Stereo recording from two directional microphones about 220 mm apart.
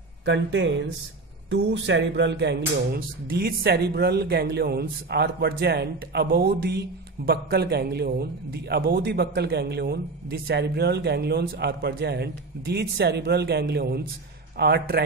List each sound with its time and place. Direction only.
0.2 s a man's voice: 55° right (ahead or behind)